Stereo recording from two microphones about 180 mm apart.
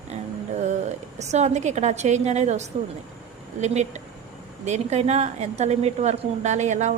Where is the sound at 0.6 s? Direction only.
40° right (ahead or behind).